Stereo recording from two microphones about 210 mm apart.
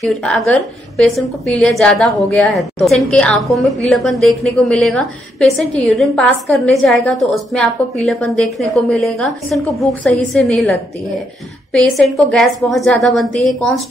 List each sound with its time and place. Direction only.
0.0 s a woman's voice: centre (ahead or behind)